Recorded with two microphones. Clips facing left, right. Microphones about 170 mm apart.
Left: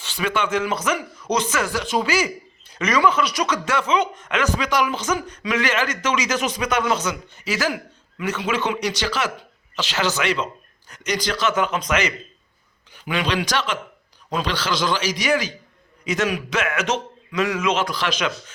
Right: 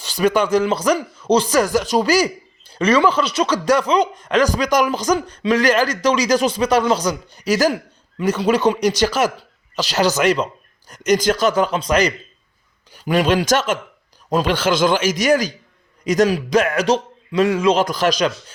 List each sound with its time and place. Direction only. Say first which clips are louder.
0.0 s a man's voice: right 7 dB; 40° right (ahead or behind)